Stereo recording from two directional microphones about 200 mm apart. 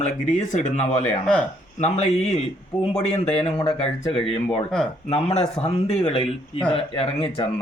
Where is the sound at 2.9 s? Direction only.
30° left (ahead or behind).